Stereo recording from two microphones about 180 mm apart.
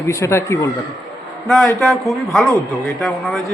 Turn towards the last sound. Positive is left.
turn(degrees=5)  # may be behind; listen again after turning